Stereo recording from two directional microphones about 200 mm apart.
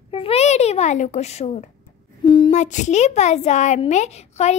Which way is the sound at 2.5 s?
35° left (ahead or behind).